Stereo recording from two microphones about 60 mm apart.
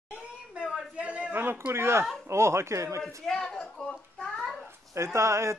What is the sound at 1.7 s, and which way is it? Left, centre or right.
A man's voice, right.